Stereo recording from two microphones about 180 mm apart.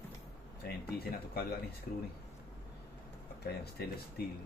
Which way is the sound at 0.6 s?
60° left (ahead or behind).